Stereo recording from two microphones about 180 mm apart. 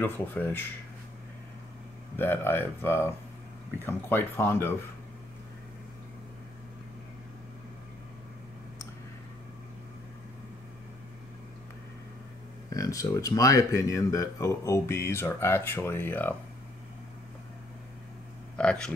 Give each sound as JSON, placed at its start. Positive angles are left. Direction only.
{"t": 0.0, "sound": "speech", "side_deg": 10}
{"t": 2.1, "sound": "speech", "side_deg": 10}
{"t": 12.6, "sound": "speech", "side_deg": 20}
{"t": 18.6, "sound": "speech", "side_deg": 5}